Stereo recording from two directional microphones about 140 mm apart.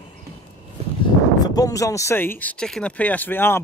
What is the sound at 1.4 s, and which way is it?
Speech, 25° left (ahead or behind).